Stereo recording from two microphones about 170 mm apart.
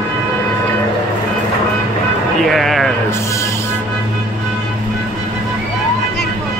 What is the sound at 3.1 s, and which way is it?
Music, 15° left (ahead or behind).